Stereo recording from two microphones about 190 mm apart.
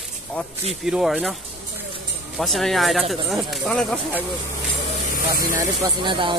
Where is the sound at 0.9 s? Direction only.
Centre (ahead or behind).